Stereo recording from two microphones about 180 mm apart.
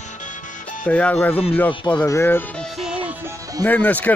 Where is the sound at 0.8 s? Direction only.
5° left (ahead or behind).